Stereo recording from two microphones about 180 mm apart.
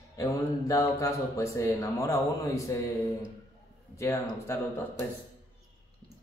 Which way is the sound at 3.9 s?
15° left (ahead or behind).